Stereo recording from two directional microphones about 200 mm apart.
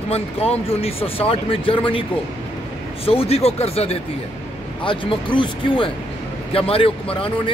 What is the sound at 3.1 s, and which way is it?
Speech, 30° left (ahead or behind).